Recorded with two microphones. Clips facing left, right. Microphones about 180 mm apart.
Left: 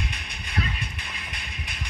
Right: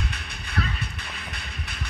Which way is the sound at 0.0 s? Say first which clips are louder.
Right 1 dB; 15° left (ahead or behind).